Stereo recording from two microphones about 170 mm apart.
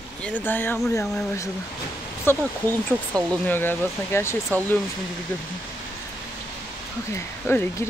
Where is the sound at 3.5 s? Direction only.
10° left (ahead or behind).